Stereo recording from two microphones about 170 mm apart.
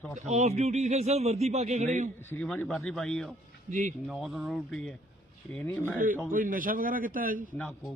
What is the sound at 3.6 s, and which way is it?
Speech, 45° right (ahead or behind).